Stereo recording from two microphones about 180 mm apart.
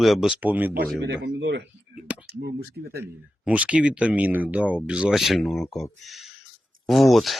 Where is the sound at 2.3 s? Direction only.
60° right (ahead or behind).